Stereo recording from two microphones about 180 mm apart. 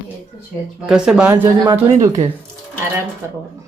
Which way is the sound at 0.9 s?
5° right (ahead or behind).